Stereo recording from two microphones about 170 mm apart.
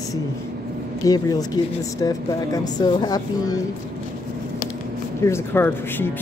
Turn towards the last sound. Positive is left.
turn(degrees=15)  # may be behind; listen again after turning